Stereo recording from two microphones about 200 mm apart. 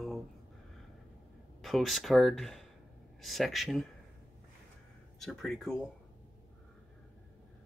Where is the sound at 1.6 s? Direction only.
Centre (ahead or behind).